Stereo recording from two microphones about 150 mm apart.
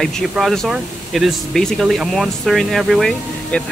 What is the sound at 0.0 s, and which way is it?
Speech, centre (ahead or behind).